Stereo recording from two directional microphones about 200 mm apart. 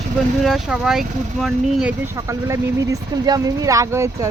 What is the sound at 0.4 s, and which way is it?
Speech, centre (ahead or behind).